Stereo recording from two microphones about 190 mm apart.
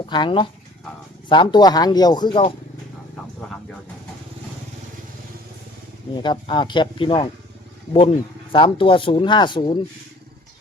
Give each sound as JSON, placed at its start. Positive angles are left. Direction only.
{"t": 0.0, "sound": "speech", "side_deg": 25}
{"t": 6.2, "sound": "speech", "side_deg": 25}
{"t": 8.5, "sound": "speech", "side_deg": 25}